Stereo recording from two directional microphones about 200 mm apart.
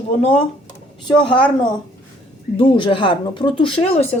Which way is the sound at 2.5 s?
25° left (ahead or behind).